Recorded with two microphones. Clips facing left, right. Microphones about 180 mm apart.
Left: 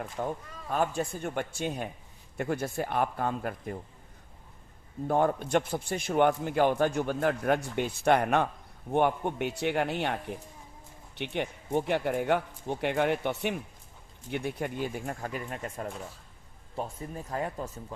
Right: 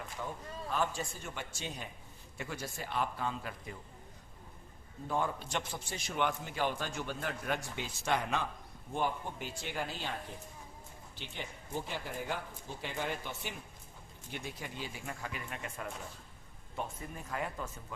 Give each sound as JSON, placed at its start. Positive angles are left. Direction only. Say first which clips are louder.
{"t": 0.2, "sound": "a man's voice", "louder": "left 7 dB", "side_deg": 50}
{"t": 5.0, "sound": "a man's voice", "louder": "left 9 dB", "side_deg": 55}